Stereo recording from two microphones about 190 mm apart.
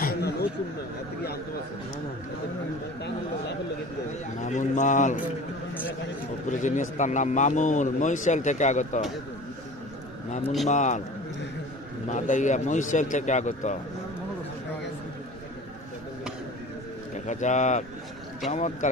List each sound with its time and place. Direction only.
0.0 s a sound: 55° left (ahead or behind)
4.4 s a man's voice: 40° left (ahead or behind)
6.5 s a man's voice: 40° left (ahead or behind)
10.7 s a man's voice: 40° left (ahead or behind)
12.1 s a man's voice: 40° left (ahead or behind)
17.3 s a man's voice: 40° left (ahead or behind)